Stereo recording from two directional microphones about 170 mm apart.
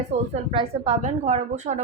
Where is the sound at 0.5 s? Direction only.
35° right (ahead or behind).